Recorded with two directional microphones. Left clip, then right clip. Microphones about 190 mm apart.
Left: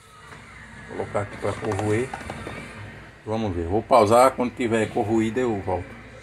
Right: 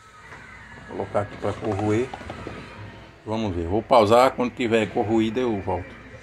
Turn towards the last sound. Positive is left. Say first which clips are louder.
# even
turn(degrees=-10)  # may be behind; listen again after turning